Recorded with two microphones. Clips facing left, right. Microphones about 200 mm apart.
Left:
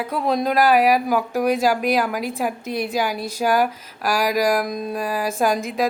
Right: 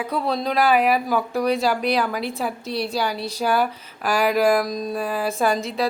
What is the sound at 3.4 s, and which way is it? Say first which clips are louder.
Speech: left 2 dB; 10° left (ahead or behind).